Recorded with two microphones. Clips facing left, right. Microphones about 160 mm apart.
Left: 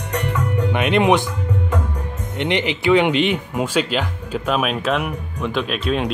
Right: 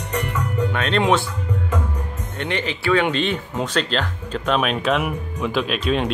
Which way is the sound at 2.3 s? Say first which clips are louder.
Left 5 dB; 15° left (ahead or behind).